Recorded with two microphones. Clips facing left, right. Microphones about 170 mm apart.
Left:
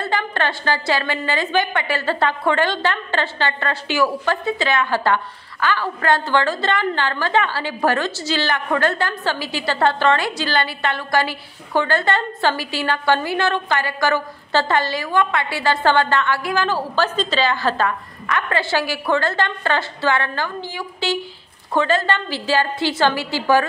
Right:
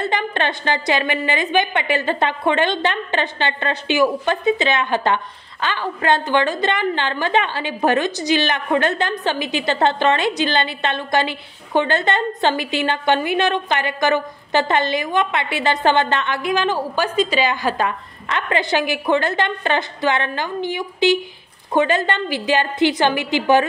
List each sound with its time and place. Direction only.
0.0 s a woman's voice: 20° right (ahead or behind)